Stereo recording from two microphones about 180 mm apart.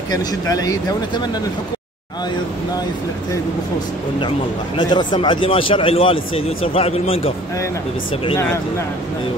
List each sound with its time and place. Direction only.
0.1 s speech: 20° left (ahead or behind)
4.7 s speech: 25° left (ahead or behind)